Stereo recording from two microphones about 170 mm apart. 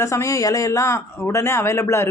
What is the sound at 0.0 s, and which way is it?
Speech, 20° left (ahead or behind).